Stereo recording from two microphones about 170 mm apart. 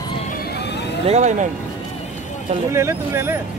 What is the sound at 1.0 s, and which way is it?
Speech, 40° right (ahead or behind).